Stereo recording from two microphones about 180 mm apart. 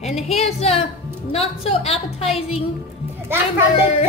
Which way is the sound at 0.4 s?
35° left (ahead or behind).